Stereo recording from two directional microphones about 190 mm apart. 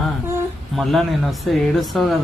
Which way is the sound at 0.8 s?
Centre (ahead or behind).